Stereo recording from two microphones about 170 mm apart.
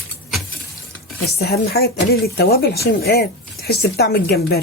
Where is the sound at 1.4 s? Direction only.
65° left (ahead or behind).